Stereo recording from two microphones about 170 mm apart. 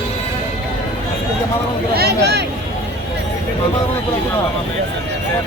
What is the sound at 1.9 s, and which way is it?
Speech, 70° right (ahead or behind).